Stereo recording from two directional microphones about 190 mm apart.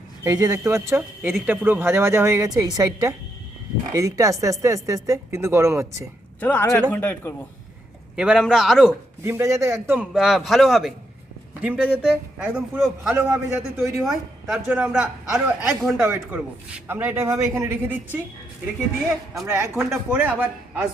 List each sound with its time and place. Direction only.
0.3 s speech: 20° right (ahead or behind)
6.4 s speech: 10° left (ahead or behind)
8.1 s a man's voice: 5° right (ahead or behind)
9.2 s a man's voice: 15° right (ahead or behind)
16.0 s speech: 15° right (ahead or behind)
19.5 s speech: 15° right (ahead or behind)
19.7 s speech: 5° right (ahead or behind)